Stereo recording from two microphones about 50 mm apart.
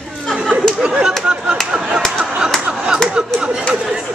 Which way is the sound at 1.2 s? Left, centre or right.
Centre.